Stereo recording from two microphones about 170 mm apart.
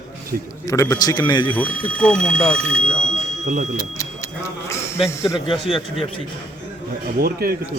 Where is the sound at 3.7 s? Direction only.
20° left (ahead or behind).